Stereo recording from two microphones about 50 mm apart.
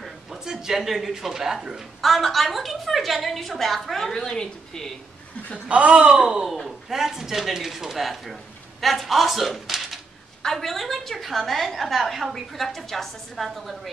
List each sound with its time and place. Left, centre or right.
0.0 s a woman's voice: centre
5.7 s speech: right
6.5 s a woman's voice: centre